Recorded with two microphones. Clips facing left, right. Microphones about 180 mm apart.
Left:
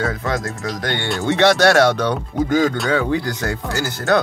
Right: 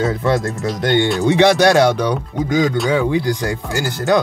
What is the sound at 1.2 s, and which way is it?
Speech, 15° right (ahead or behind).